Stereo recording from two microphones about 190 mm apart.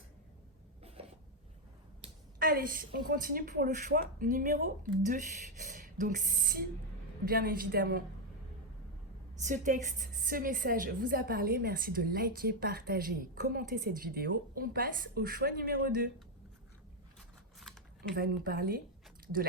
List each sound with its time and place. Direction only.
0.8 s writing: 30° right (ahead or behind)
2.4 s a woman's voice: 50° right (ahead or behind)
9.4 s a woman's voice: 40° right (ahead or behind)
18.1 s a woman's voice: 50° right (ahead or behind)